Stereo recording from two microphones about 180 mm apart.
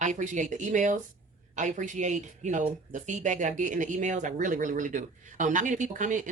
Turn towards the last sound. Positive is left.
turn(degrees=-45)  # may be behind; listen again after turning